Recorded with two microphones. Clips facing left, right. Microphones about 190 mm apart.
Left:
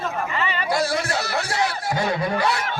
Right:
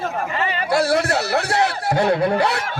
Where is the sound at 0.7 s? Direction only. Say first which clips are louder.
Right 6 dB; 65° right (ahead or behind).